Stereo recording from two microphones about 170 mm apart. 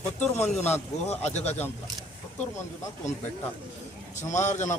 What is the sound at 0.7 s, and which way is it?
Speech, 40° left (ahead or behind).